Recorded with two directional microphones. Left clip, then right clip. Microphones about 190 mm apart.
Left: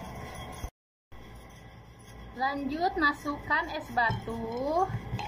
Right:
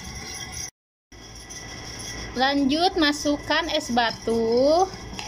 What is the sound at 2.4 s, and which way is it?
A woman's voice, 25° right (ahead or behind).